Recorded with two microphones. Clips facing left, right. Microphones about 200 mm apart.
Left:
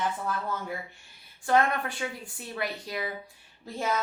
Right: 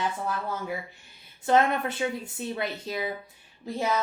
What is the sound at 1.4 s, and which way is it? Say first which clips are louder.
A woman's voice: right 2 dB; 20° right (ahead or behind).